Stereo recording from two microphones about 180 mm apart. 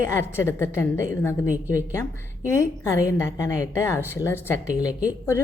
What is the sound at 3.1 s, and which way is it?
A woman's voice, 15° left (ahead or behind).